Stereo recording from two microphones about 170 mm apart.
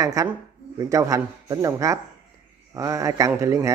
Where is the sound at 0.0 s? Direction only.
20° right (ahead or behind).